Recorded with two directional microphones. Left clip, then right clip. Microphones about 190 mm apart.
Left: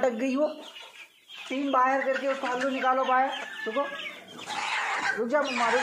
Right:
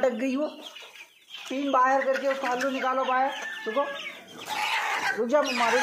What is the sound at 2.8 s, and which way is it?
Speech, 5° right (ahead or behind).